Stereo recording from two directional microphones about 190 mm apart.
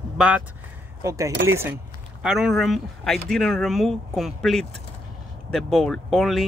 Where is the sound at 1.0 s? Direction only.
15° right (ahead or behind).